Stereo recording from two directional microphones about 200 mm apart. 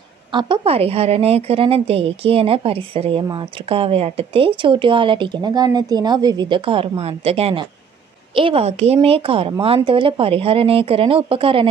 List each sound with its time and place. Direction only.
0.3 s a woman's voice: 25° right (ahead or behind)